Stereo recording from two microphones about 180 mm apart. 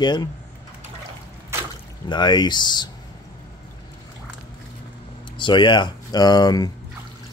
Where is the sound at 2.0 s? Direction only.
25° left (ahead or behind).